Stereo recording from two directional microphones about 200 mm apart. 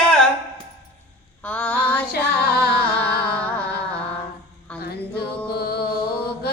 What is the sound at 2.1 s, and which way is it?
Female singing, 50° left (ahead or behind).